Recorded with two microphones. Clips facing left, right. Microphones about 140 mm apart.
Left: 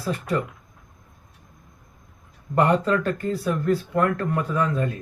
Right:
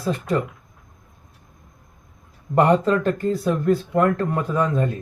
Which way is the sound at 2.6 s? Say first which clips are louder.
Right 3 dB; 25° right (ahead or behind).